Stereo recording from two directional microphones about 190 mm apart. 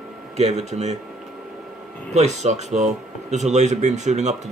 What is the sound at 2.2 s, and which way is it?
Speech, 35° right (ahead or behind).